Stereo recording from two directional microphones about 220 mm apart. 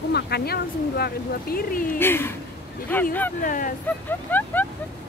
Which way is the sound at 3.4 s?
40° left (ahead or behind).